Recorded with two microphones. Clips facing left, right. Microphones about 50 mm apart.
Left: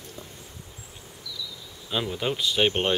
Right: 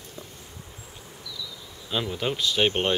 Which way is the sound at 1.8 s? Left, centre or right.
Centre.